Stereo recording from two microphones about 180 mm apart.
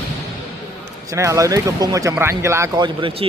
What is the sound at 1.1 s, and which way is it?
Speech, 15° right (ahead or behind).